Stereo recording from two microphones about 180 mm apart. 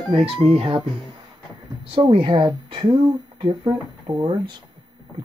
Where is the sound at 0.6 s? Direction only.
30° right (ahead or behind).